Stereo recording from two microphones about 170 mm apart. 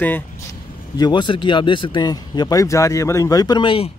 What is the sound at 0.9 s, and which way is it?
Speech, 25° left (ahead or behind).